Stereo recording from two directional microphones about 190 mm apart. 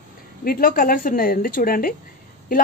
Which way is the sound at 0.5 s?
45° left (ahead or behind).